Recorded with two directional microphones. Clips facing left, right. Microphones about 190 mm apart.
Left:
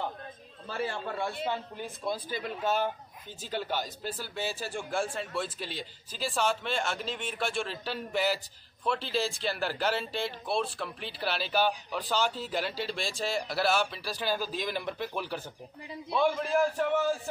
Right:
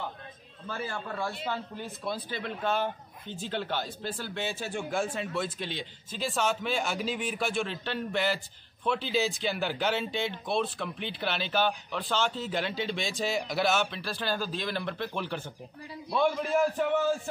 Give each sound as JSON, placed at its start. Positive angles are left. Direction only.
{"t": 0.7, "sound": "a man's voice", "side_deg": 25}